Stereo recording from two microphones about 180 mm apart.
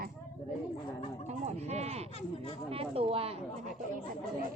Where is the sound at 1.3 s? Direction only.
40° right (ahead or behind).